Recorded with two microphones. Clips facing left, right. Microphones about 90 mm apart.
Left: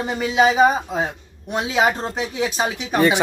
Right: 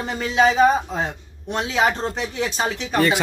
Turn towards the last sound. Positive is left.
turn(degrees=15)  # may be behind; listen again after turning